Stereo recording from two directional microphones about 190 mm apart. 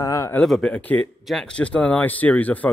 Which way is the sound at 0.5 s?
5° left (ahead or behind).